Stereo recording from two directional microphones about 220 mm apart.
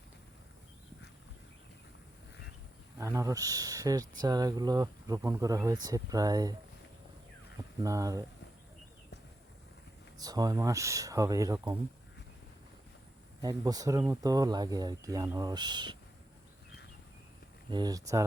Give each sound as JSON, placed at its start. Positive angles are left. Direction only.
{"t": 3.0, "sound": "speech", "side_deg": -15}
{"t": 7.8, "sound": "speech", "side_deg": -15}
{"t": 10.2, "sound": "speech", "side_deg": -15}
{"t": 13.4, "sound": "speech", "side_deg": -15}
{"t": 17.7, "sound": "speech", "side_deg": -20}